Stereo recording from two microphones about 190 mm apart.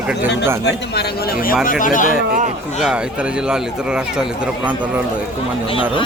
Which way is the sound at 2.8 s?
5° right (ahead or behind).